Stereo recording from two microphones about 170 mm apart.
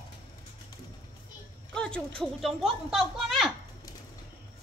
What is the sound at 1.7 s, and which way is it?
Speech, 5° left (ahead or behind).